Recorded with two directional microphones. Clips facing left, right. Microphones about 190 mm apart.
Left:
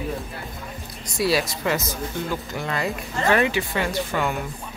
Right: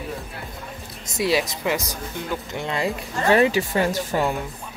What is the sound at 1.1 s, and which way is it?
Speech, 20° right (ahead or behind).